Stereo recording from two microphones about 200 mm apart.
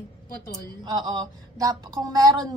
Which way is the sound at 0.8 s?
20° right (ahead or behind).